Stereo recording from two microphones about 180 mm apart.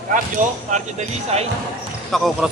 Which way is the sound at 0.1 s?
45° right (ahead or behind).